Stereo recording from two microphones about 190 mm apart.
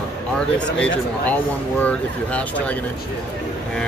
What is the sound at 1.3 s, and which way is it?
Speech, 10° left (ahead or behind).